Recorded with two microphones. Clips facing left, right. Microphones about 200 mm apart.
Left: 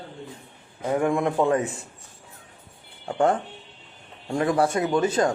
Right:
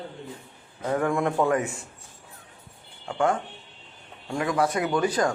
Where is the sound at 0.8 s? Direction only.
15° left (ahead or behind).